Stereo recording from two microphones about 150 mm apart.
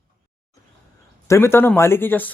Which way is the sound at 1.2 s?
15° left (ahead or behind).